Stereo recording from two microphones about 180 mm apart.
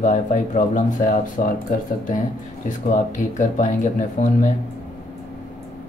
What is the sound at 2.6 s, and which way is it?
Speech, 45° left (ahead or behind).